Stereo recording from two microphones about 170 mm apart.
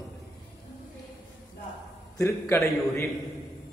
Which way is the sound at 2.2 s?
15° left (ahead or behind).